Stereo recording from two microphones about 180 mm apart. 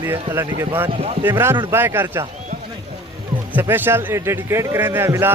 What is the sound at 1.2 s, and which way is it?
Speech, 15° right (ahead or behind).